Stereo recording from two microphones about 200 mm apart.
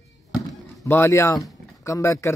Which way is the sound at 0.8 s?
10° left (ahead or behind).